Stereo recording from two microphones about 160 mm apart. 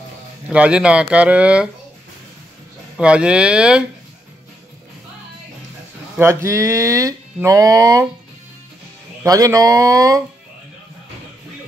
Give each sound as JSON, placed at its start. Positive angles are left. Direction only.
{"t": 0.5, "sound": "speech", "side_deg": -5}
{"t": 3.0, "sound": "speech", "side_deg": -5}
{"t": 6.1, "sound": "speech", "side_deg": -15}
{"t": 9.2, "sound": "speech", "side_deg": -20}